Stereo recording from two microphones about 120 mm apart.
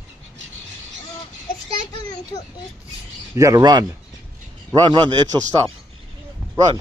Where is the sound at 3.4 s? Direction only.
25° right (ahead or behind).